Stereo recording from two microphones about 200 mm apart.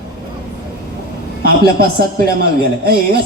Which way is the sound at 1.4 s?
50° right (ahead or behind).